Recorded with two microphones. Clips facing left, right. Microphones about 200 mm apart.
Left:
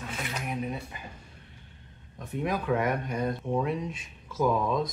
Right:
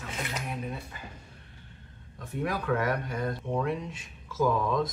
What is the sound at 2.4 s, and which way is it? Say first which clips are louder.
Speech: left 1 dB; 20° left (ahead or behind).